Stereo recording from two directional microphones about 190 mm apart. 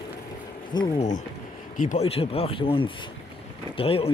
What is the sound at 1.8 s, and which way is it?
Speech, 40° left (ahead or behind).